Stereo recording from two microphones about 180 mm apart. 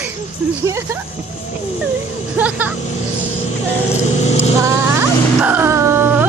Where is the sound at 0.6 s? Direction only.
15° right (ahead or behind).